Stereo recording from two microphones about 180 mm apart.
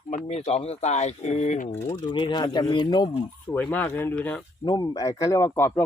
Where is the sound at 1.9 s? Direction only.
25° left (ahead or behind).